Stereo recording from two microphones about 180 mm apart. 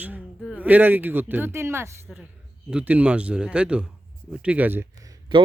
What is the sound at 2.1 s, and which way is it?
Speech, 5° right (ahead or behind).